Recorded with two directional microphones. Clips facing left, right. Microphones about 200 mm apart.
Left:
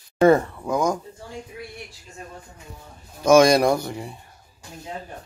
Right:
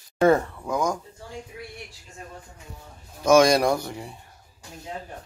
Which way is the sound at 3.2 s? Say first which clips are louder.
Left 2 dB; 15° left (ahead or behind).